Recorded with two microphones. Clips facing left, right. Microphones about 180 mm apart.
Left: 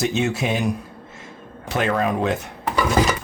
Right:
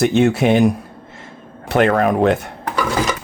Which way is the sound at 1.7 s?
60° right (ahead or behind).